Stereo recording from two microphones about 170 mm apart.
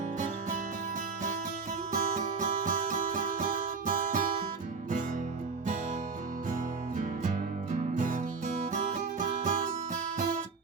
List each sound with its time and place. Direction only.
1.9 s music: 50° right (ahead or behind)
6.5 s music: 50° right (ahead or behind)